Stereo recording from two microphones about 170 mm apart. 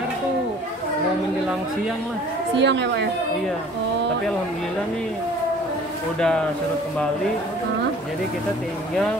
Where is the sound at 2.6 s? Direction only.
90° right.